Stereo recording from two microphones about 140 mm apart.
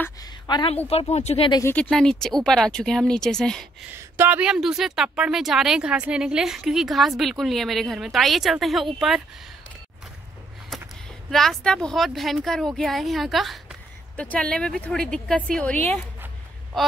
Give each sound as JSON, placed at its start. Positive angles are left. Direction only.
{"t": 0.2, "sound": "a sound", "side_deg": 30}
{"t": 0.8, "sound": "speech", "side_deg": 50}
{"t": 1.6, "sound": "a woman's voice", "side_deg": 15}
{"t": 1.9, "sound": "a woman's voice", "side_deg": 5}
{"t": 3.9, "sound": "a woman's voice", "side_deg": -15}
{"t": 10.7, "sound": "a sound", "side_deg": 0}
{"t": 11.2, "sound": "a woman's voice", "side_deg": 5}